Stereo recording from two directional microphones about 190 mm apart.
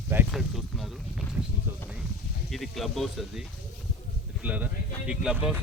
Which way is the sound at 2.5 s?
Centre (ahead or behind).